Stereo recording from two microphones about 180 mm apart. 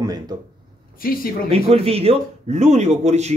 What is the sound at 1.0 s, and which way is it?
Speech, 55° left (ahead or behind).